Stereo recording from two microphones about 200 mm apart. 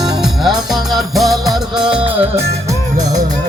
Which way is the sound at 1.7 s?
25° right (ahead or behind).